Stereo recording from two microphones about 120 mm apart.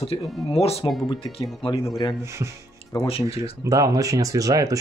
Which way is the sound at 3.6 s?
30° right (ahead or behind).